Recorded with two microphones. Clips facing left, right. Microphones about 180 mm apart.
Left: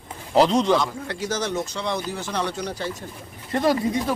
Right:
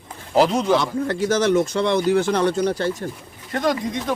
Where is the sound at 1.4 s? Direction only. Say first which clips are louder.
Right 9 dB; 75° right (ahead or behind).